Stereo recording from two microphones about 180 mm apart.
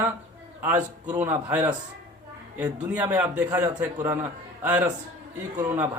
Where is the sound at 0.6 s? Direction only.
10° right (ahead or behind).